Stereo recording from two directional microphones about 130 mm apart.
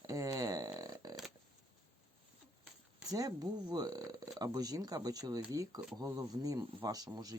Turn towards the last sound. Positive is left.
turn(degrees=-30)  # may be behind; listen again after turning